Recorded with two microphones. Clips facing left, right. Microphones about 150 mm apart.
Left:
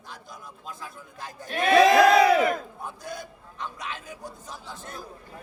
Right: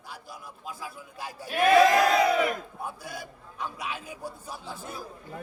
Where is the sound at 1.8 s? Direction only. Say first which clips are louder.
Left 4 dB; 90° left.